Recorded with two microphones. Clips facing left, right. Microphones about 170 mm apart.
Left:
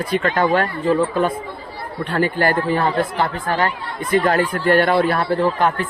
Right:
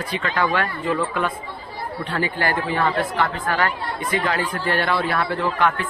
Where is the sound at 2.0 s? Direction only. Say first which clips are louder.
Left 6 dB; 50° left (ahead or behind); by 3.7 s 30° left (ahead or behind).